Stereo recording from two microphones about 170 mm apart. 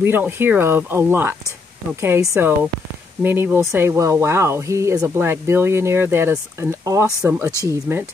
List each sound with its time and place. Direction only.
0.0 s speech: 10° right (ahead or behind)